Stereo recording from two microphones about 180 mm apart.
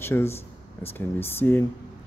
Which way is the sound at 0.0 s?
15° left (ahead or behind).